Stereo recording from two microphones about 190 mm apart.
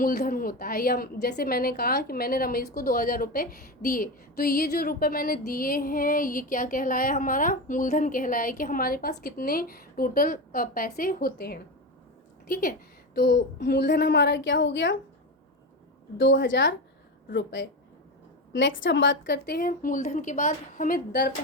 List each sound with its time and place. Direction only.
0.0 s a woman's voice: 50° left (ahead or behind)
13.1 s a woman's voice: 65° left (ahead or behind)
16.1 s a woman's voice: 75° left (ahead or behind); by 21.3 s 60° left (ahead or behind)